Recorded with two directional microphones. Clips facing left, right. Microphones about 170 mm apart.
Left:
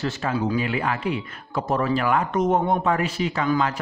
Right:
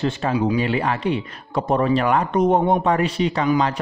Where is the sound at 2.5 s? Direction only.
15° right (ahead or behind).